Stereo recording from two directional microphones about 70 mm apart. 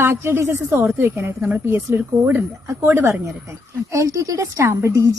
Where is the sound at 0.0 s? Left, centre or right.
Right.